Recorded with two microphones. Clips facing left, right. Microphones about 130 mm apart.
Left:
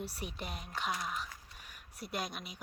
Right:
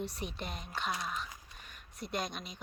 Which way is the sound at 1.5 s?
10° left (ahead or behind).